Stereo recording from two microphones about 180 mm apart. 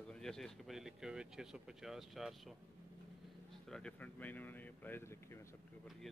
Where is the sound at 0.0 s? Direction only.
5° left (ahead or behind).